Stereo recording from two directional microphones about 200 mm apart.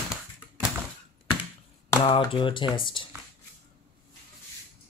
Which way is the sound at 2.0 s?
25° left (ahead or behind).